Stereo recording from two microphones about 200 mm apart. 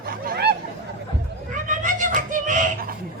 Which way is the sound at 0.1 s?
50° right (ahead or behind).